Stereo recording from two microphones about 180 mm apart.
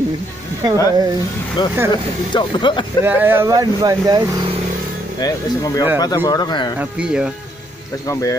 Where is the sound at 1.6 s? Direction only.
25° left (ahead or behind).